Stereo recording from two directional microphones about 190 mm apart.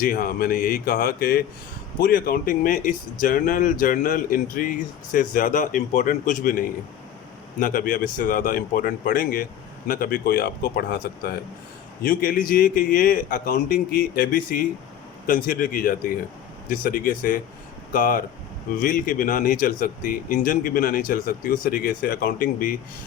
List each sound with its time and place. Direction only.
0.0 s speech: 50° left (ahead or behind)